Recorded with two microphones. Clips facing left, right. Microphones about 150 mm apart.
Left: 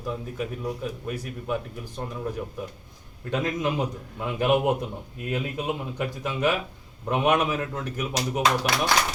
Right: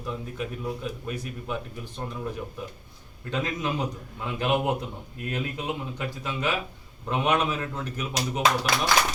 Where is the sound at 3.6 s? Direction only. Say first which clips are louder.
Left 3 dB; 15° left (ahead or behind).